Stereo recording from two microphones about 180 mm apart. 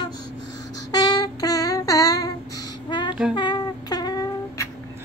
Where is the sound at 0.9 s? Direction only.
20° left (ahead or behind).